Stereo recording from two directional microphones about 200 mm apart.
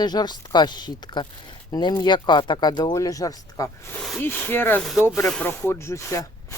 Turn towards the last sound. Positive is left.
turn(degrees=15)  # may be behind; listen again after turning